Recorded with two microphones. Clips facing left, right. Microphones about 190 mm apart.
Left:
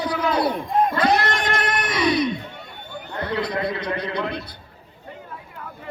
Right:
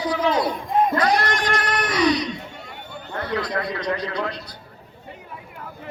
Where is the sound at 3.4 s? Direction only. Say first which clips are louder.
Left 1 dB; 55° left (ahead or behind).